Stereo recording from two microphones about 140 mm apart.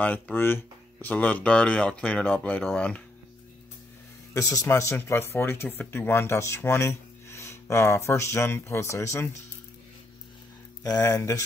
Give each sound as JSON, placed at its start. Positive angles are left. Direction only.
{"t": 0.0, "sound": "speech", "side_deg": 15}
{"t": 4.3, "sound": "speech", "side_deg": 25}
{"t": 10.8, "sound": "speech", "side_deg": 25}